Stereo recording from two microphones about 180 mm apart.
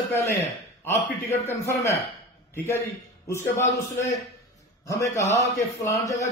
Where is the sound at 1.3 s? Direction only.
40° left (ahead or behind).